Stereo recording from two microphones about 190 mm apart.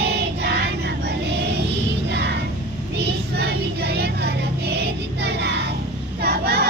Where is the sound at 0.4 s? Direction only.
60° right (ahead or behind).